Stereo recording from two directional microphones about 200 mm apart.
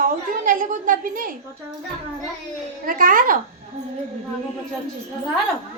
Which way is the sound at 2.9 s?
45° right (ahead or behind).